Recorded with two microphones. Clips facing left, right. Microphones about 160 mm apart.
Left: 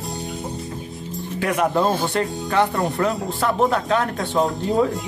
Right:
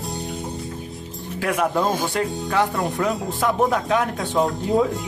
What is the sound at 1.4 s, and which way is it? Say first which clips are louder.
Speech: left 1 dB; centre (ahead or behind).